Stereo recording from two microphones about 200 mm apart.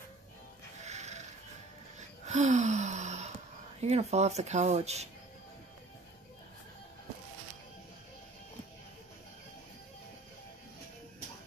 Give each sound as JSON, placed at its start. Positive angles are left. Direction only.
{"t": 0.7, "sound": "music", "side_deg": -35}
{"t": 2.0, "sound": "gasp", "side_deg": -35}
{"t": 3.8, "sound": "speech", "side_deg": -35}